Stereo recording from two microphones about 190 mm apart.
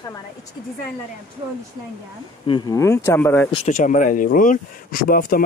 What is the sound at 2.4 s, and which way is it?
Speech, 25° left (ahead or behind).